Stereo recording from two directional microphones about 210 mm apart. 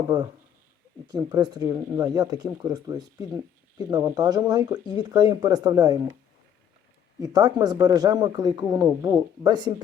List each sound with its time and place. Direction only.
1.0 s speech: 20° right (ahead or behind)
7.2 s speech: 20° right (ahead or behind)